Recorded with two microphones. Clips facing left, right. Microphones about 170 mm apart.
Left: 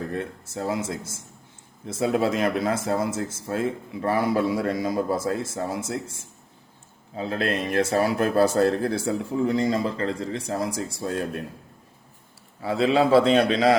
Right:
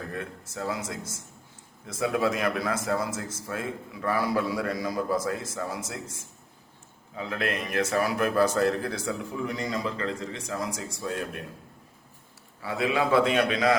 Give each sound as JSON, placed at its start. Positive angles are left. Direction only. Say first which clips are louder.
{"t": 0.1, "sound": "a man's voice", "louder": "left 5 dB", "side_deg": 30}
{"t": 7.2, "sound": "speech", "louder": "left 4 dB", "side_deg": 30}
{"t": 12.6, "sound": "speech", "louder": "left 6 dB", "side_deg": 30}